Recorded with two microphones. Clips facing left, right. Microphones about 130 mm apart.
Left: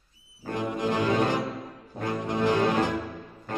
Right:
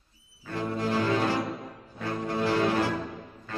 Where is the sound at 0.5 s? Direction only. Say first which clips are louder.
Left 1 dB; 20° left (ahead or behind).